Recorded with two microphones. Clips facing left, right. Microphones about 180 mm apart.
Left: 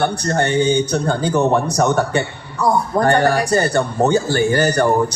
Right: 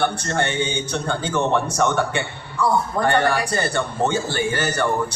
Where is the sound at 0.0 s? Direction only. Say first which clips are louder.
Left 4 dB; 40° left (ahead or behind).